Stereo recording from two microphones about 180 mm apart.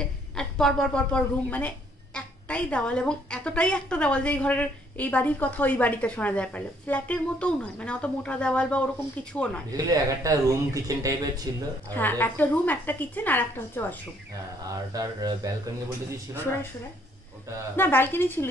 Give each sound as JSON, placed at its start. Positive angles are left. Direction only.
{"t": 0.4, "sound": "a woman's voice", "side_deg": 5}
{"t": 9.7, "sound": "speech", "side_deg": -20}
{"t": 11.9, "sound": "a woman's voice", "side_deg": 10}
{"t": 14.9, "sound": "speech", "side_deg": -20}
{"t": 17.7, "sound": "a woman's voice", "side_deg": 10}